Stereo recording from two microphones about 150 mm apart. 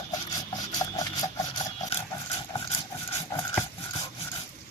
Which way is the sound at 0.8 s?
25° left (ahead or behind).